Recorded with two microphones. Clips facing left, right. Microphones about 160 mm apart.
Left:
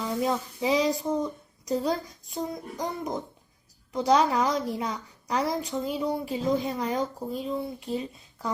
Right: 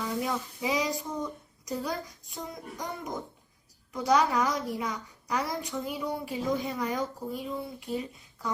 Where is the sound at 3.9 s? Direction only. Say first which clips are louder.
Left 3 dB; 25° left (ahead or behind).